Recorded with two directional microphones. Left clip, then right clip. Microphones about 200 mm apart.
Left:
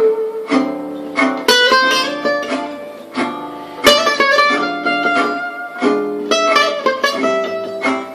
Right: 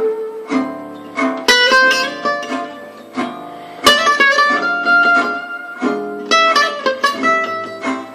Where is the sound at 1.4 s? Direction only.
20° right (ahead or behind).